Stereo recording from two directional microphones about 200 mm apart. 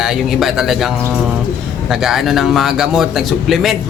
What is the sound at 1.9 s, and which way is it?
A woman's voice, centre (ahead or behind).